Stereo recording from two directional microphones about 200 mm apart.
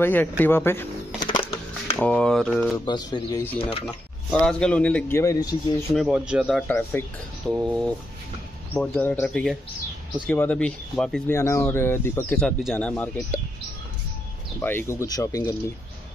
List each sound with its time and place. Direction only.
0.0 s speech: 10° left (ahead or behind)
1.4 s a sound: 10° left (ahead or behind)
2.8 s speech: 20° left (ahead or behind)
3.8 s speech: 5° left (ahead or behind)
5.9 s speech: 5° right (ahead or behind)
6.7 s speech: 10° left (ahead or behind)
7.5 s speech: 5° right (ahead or behind)
8.7 s speech: 5° left (ahead or behind)
11.3 s speech: 15° left (ahead or behind)
14.6 s speech: 10° left (ahead or behind)